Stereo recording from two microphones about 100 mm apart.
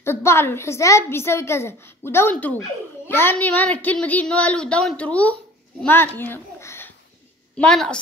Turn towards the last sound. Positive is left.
turn(degrees=10)  # may be behind; listen again after turning